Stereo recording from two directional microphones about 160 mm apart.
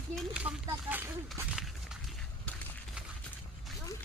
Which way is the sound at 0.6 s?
15° right (ahead or behind).